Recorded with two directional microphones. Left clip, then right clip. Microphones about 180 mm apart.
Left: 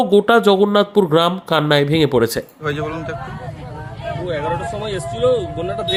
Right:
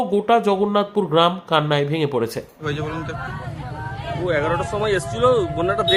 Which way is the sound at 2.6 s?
5° right (ahead or behind).